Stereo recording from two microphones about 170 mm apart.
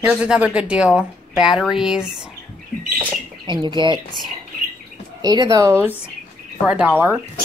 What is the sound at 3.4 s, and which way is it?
Speech, 25° right (ahead or behind).